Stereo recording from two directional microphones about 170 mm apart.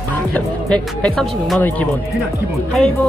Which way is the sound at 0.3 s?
5° left (ahead or behind).